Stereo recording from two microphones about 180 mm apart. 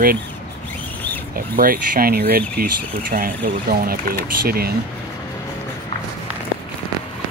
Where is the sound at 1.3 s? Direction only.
55° right (ahead or behind).